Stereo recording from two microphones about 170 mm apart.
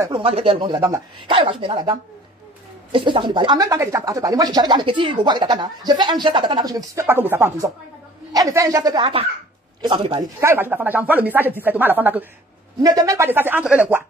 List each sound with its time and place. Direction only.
0.1 s speech: 35° right (ahead or behind)
10.4 s speech: 15° right (ahead or behind)
12.8 s speech: 20° right (ahead or behind)